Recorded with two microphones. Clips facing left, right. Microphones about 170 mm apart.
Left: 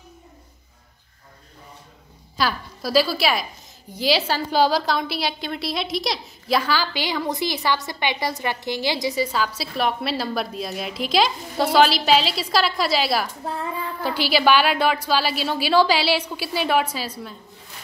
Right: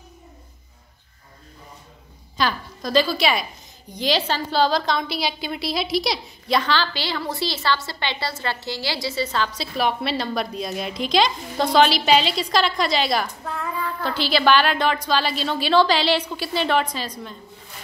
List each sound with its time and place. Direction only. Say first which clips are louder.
2.3 s a woman's voice: even; 5° left (ahead or behind)
13.4 s child singing: left 2 dB; 35° left (ahead or behind)
14.0 s a woman's voice: left 1 dB; 10° left (ahead or behind)